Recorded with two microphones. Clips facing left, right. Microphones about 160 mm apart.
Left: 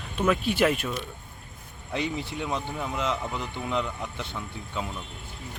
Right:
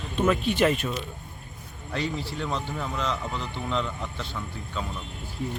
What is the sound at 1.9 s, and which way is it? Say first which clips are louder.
Speech: even; 20° left (ahead or behind).